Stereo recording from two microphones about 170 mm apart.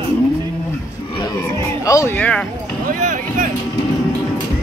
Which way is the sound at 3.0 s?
50° right (ahead or behind).